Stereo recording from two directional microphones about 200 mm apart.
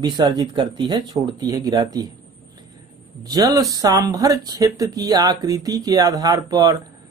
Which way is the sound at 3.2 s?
20° right (ahead or behind).